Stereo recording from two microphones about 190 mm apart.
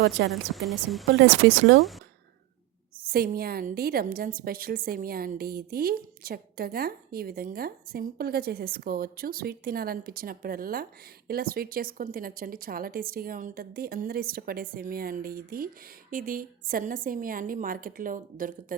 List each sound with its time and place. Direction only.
0.3 s speech: centre (ahead or behind)
1.2 s speech: 70° right (ahead or behind)
1.8 s speech: centre (ahead or behind)
3.0 s a woman's voice: 50° right (ahead or behind)